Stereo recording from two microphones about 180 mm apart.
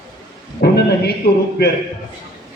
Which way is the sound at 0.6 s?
65° left (ahead or behind).